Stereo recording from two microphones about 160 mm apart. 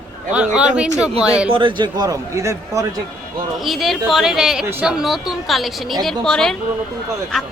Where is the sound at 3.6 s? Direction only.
Centre (ahead or behind).